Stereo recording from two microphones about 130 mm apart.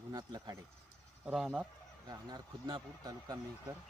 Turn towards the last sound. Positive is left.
turn(degrees=-30)  # may be behind; listen again after turning